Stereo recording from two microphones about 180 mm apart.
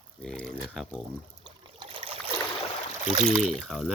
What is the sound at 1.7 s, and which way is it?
Trickle, 30° right (ahead or behind).